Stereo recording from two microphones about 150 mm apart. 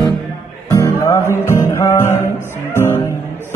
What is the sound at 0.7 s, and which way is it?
Music, 20° left (ahead or behind).